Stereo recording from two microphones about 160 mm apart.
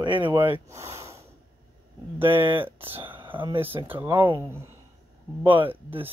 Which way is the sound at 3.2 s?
30° right (ahead or behind).